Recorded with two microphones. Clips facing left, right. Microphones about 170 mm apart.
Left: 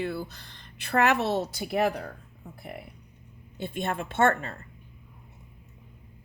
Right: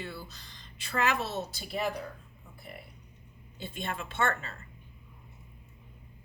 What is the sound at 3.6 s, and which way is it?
Speech, 50° left (ahead or behind).